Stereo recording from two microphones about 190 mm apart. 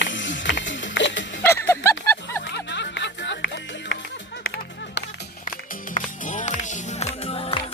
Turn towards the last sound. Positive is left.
turn(degrees=30)  # may be behind; listen again after turning